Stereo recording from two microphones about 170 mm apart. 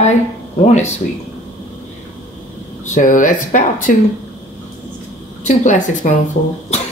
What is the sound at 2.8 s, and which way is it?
Speech, 50° left (ahead or behind).